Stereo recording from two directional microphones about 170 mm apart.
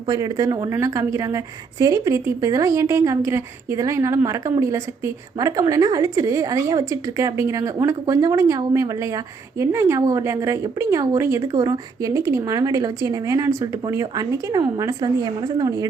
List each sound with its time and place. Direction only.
0.1 s a woman's voice: 20° right (ahead or behind)